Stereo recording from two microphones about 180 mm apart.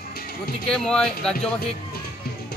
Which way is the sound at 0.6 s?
5° left (ahead or behind).